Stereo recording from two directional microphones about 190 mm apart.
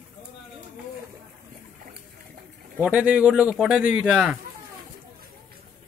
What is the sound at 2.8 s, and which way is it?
Speech, 5° right (ahead or behind).